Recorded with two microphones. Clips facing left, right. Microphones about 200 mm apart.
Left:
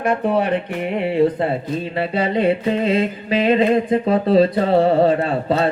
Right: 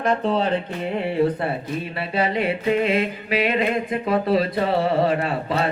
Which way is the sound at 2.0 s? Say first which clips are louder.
Left 4 dB; 30° left (ahead or behind).